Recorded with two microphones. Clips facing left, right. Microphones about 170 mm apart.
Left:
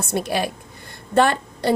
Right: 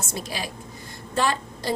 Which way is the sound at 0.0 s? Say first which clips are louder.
Left 9 dB; 60° left (ahead or behind).